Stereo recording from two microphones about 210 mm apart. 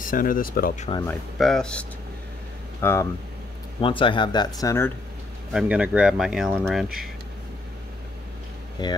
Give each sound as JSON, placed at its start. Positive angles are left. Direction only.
{"t": 0.0, "sound": "speech", "side_deg": 40}
{"t": 1.0, "sound": "speech", "side_deg": 0}
{"t": 3.8, "sound": "speech", "side_deg": 25}
{"t": 5.5, "sound": "speech", "side_deg": -5}
{"t": 8.8, "sound": "speech", "side_deg": 20}